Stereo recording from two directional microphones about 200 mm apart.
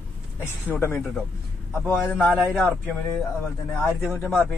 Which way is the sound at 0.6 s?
10° left (ahead or behind).